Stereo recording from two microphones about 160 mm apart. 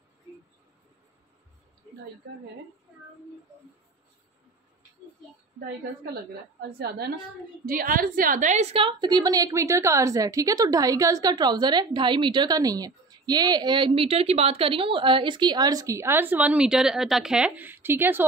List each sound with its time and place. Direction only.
2.3 s a woman's voice: 85° right
6.8 s a woman's voice: 85° right
7.6 s a woman's voice: 60° right (ahead or behind); by 15.9 s 25° right (ahead or behind)
16.0 s speech: 15° right (ahead or behind)